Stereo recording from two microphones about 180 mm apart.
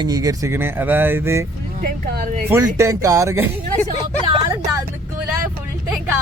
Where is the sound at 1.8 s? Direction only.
55° right (ahead or behind).